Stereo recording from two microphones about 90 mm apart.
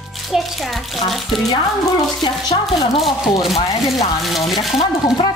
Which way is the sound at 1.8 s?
50° left (ahead or behind).